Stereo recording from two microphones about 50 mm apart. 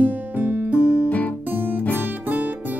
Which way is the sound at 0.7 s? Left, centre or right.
Right.